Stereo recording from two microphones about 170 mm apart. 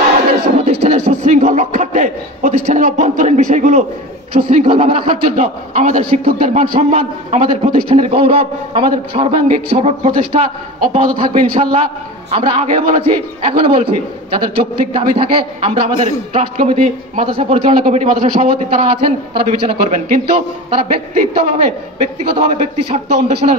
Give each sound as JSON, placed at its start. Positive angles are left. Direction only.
{"t": 0.6, "sound": "a man's voice", "side_deg": -35}
{"t": 17.7, "sound": "a man's voice", "side_deg": -50}
{"t": 18.4, "sound": "a man's voice", "side_deg": -40}